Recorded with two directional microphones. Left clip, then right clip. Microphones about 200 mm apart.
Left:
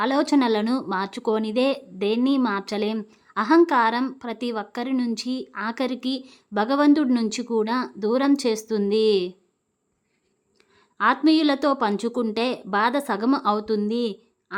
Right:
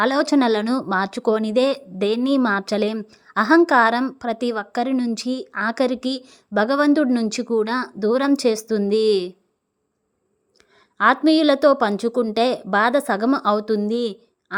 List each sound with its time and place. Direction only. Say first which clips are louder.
0.0 s a woman's voice: right 3 dB; 20° right (ahead or behind)
10.6 s a woman's voice: right 5 dB; 20° right (ahead or behind)